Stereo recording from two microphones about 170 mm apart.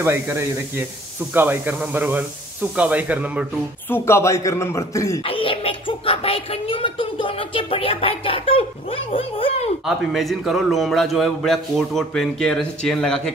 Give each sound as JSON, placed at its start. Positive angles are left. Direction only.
{"t": 0.0, "sound": "speech", "side_deg": -15}
{"t": 3.9, "sound": "a man's voice", "side_deg": 15}
{"t": 5.2, "sound": "speech", "side_deg": 30}
{"t": 9.8, "sound": "a man's voice", "side_deg": 0}